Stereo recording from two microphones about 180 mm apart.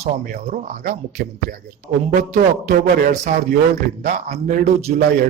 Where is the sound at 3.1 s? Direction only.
45° right (ahead or behind).